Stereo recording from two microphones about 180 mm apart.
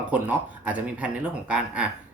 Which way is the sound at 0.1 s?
10° right (ahead or behind).